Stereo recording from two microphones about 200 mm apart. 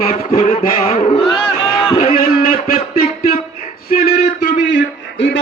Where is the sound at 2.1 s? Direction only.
45° left (ahead or behind).